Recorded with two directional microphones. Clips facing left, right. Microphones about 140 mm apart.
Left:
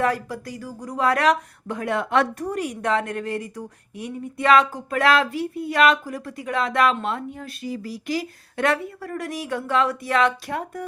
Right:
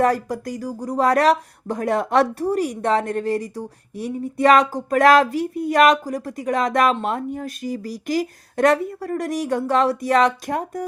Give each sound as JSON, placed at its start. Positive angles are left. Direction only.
{"t": 0.0, "sound": "speech", "side_deg": -40}